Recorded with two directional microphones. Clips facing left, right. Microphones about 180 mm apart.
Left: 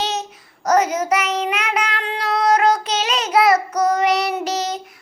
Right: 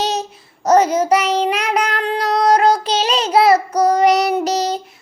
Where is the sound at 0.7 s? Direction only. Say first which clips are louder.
Right 4 dB; 30° right (ahead or behind).